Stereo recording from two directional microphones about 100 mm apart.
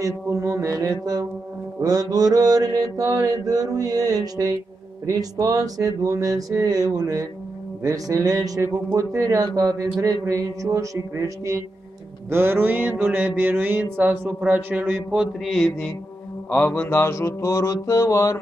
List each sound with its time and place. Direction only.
0.0 s speech: 35° right (ahead or behind)
12.3 s mantra: 25° right (ahead or behind)
15.4 s mantra: centre (ahead or behind)
16.4 s mantra: 15° left (ahead or behind)